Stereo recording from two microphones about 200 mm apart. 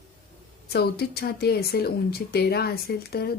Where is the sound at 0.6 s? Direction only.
50° left (ahead or behind).